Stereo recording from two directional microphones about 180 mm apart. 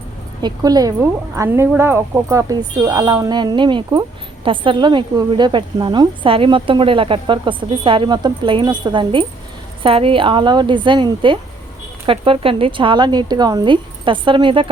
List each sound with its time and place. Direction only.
0.4 s speech: 20° right (ahead or behind)